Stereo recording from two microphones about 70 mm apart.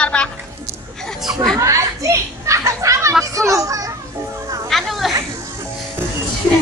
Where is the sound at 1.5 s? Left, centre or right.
Right.